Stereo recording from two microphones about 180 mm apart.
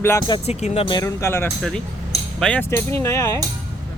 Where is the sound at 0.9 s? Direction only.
20° left (ahead or behind).